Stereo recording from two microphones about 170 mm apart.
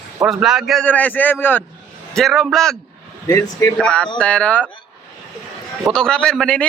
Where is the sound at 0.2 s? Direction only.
5° right (ahead or behind).